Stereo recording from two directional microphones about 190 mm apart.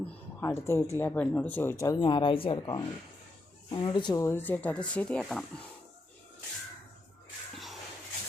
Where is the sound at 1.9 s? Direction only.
25° left (ahead or behind); by 5.4 s centre (ahead or behind).